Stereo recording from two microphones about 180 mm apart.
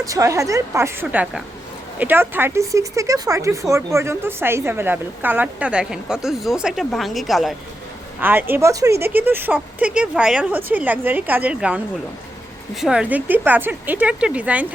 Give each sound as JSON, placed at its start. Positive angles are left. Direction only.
{"t": 0.0, "sound": "speech", "side_deg": -20}
{"t": 8.2, "sound": "speech", "side_deg": -10}
{"t": 12.8, "sound": "speech", "side_deg": -5}